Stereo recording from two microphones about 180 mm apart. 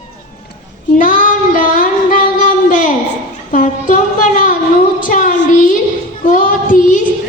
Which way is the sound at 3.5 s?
45° left (ahead or behind).